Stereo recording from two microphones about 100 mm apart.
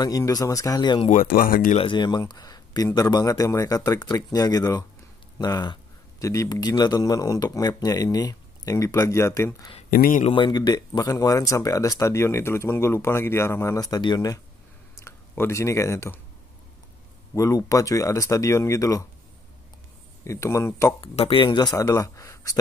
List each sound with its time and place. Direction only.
0.0 s speech: 40° left (ahead or behind)
9.7 s speech: 90° left
10.3 s speech: 50° left (ahead or behind)
15.0 s speech: 25° left (ahead or behind)
17.3 s speech: 35° left (ahead or behind)
20.2 s speech: 30° left (ahead or behind)
21.0 s speech: 55° left (ahead or behind); by 22.6 s 35° left (ahead or behind)